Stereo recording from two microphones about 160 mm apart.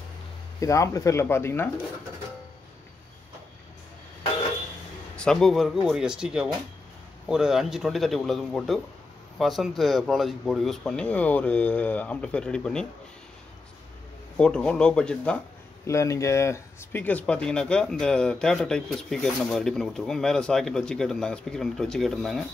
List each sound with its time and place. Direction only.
0.6 s speech: 20° left (ahead or behind)
5.1 s speech: 5° left (ahead or behind)
14.3 s speech: 5° left (ahead or behind)
15.9 s speech: 20° left (ahead or behind); by 22.4 s centre (ahead or behind)